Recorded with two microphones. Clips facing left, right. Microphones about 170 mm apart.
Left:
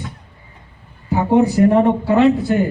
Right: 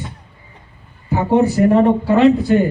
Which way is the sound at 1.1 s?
15° left (ahead or behind).